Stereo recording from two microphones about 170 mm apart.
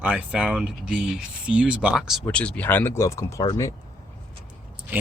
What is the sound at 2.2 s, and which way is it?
Speech, 5° left (ahead or behind).